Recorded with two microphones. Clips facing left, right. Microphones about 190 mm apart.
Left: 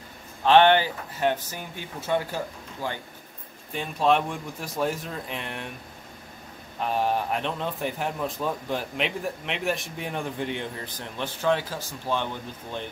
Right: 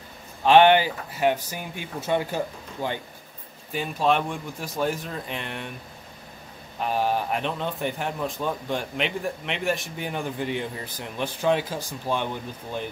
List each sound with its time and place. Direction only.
0.5 s speech: 10° right (ahead or behind)
3.7 s a man's voice: centre (ahead or behind)
6.8 s a man's voice: centre (ahead or behind)
11.1 s speech: 15° right (ahead or behind)